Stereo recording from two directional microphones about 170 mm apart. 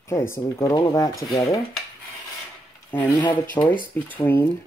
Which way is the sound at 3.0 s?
25° left (ahead or behind).